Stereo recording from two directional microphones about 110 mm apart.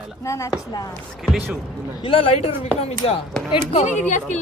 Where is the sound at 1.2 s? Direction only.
Centre (ahead or behind).